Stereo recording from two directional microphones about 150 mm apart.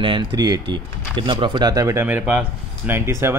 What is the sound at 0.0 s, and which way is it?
A man's voice, 30° right (ahead or behind).